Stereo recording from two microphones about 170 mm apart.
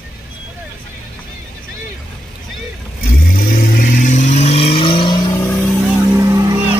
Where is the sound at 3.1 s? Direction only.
60° left (ahead or behind); by 5.4 s 25° left (ahead or behind).